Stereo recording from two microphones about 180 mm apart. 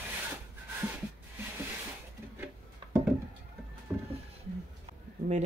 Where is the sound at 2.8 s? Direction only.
25° right (ahead or behind).